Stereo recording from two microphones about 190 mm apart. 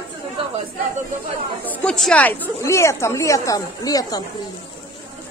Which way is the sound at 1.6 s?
5° left (ahead or behind).